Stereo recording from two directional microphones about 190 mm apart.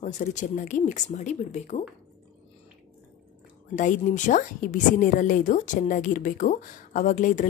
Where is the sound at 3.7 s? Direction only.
40° left (ahead or behind).